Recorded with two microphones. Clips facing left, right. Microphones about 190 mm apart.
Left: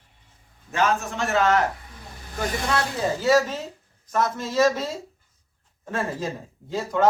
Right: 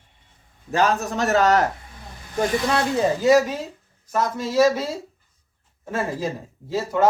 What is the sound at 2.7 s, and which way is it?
Speech, 15° right (ahead or behind).